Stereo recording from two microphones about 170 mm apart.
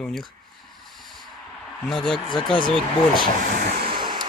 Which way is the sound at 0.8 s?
Centre (ahead or behind).